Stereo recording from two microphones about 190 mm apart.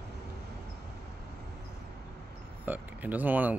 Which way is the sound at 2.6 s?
10° right (ahead or behind).